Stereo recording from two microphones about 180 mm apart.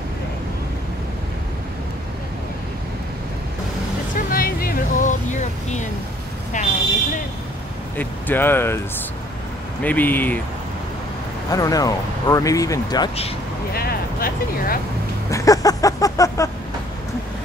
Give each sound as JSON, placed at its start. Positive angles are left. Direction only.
{"t": 4.3, "sound": "vehicle", "side_deg": 55}
{"t": 8.0, "sound": "speech", "side_deg": 10}
{"t": 9.8, "sound": "speech", "side_deg": 10}
{"t": 11.5, "sound": "speech", "side_deg": 20}
{"t": 13.7, "sound": "speech", "side_deg": 55}
{"t": 15.2, "sound": "music", "side_deg": 20}